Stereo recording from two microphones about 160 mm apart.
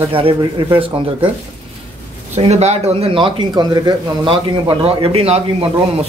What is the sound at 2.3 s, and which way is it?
Speech, 40° right (ahead or behind).